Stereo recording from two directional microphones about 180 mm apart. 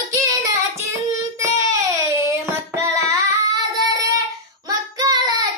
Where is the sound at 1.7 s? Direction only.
15° right (ahead or behind).